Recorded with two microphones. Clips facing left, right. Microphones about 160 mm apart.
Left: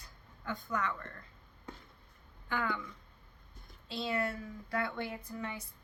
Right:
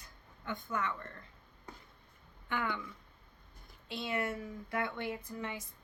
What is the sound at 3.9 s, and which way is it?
Speech, 20° right (ahead or behind).